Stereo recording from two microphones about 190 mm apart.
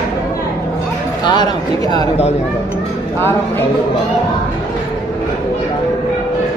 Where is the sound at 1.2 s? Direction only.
20° left (ahead or behind).